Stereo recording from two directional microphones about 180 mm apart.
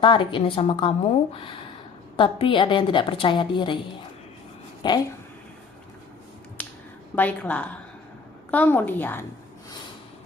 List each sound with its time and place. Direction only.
0.0 s a woman's voice: 25° left (ahead or behind)
4.8 s a woman's voice: 25° left (ahead or behind)
7.2 s a woman's voice: 10° left (ahead or behind)